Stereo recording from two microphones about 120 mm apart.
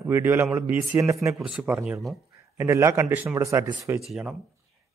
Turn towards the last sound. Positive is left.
turn(degrees=-5)  # may be behind; listen again after turning